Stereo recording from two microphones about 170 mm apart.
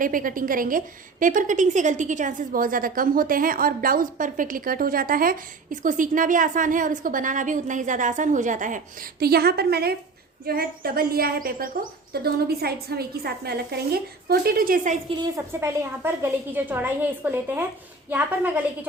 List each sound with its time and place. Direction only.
0.0 s a woman's voice: 55° right (ahead or behind)
15.2 s a woman's voice: 15° right (ahead or behind)